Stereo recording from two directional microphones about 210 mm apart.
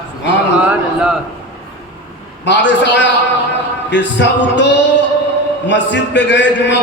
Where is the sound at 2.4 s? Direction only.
55° left (ahead or behind).